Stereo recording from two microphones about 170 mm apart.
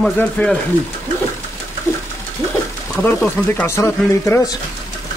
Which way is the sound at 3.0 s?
15° left (ahead or behind).